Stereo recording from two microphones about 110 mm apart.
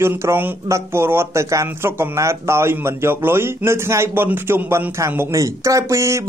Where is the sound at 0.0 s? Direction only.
20° right (ahead or behind).